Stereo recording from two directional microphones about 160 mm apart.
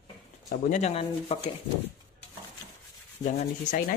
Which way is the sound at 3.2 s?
50° left (ahead or behind).